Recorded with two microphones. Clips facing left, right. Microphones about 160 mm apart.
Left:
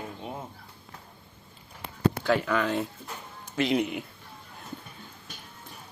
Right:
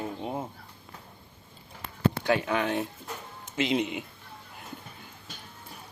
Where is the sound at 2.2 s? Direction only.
20° right (ahead or behind).